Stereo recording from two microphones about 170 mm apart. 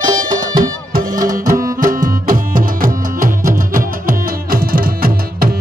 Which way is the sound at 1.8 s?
55° right (ahead or behind).